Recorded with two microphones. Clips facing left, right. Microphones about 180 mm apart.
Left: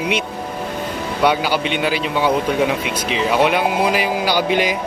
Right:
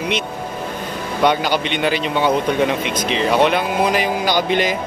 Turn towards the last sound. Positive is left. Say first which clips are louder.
# even
turn(degrees=10)  # may be behind; listen again after turning